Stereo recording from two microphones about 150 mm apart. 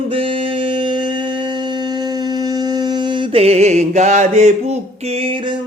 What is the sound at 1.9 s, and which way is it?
Mantra, 30° right (ahead or behind).